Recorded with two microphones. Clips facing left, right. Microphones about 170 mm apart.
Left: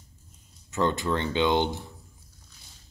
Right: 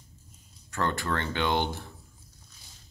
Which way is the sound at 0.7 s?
20° left (ahead or behind).